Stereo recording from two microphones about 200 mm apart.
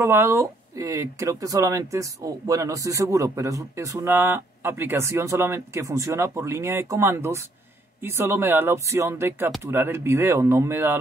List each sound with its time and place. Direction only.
0.0 s speech: 15° right (ahead or behind)